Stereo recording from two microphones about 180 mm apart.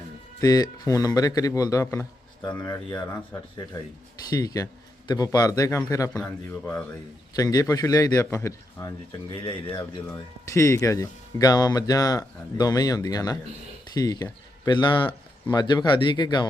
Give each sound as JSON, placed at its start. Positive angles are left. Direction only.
{"t": 0.4, "sound": "speech", "side_deg": 20}
{"t": 4.3, "sound": "speech", "side_deg": 20}
{"t": 7.3, "sound": "speech", "side_deg": 20}
{"t": 9.3, "sound": "speech", "side_deg": 25}